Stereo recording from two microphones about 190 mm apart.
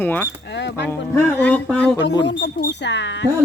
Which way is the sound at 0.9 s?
10° left (ahead or behind).